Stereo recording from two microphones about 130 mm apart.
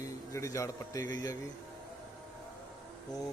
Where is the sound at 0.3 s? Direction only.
25° left (ahead or behind).